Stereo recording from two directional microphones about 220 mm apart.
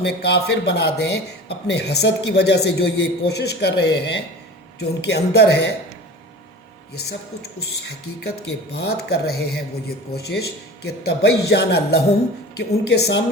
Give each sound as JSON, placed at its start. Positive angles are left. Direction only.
{"t": 0.0, "sound": "speech", "side_deg": 50}
{"t": 8.2, "sound": "speech", "side_deg": 50}